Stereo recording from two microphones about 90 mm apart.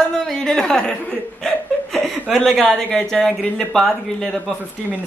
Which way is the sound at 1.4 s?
5° left (ahead or behind).